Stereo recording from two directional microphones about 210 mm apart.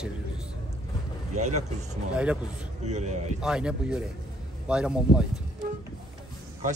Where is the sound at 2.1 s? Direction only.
5° right (ahead or behind).